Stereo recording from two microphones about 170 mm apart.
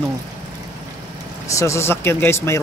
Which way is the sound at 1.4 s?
20° left (ahead or behind).